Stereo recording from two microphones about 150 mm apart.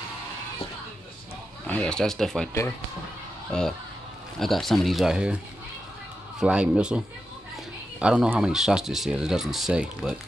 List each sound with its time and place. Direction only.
1.7 s speech: 5° left (ahead or behind)
4.4 s speech: centre (ahead or behind)
6.4 s speech: 5° right (ahead or behind)
8.0 s speech: 5° right (ahead or behind)